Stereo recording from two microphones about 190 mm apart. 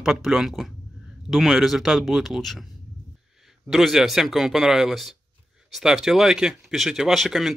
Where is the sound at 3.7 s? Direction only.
Centre (ahead or behind).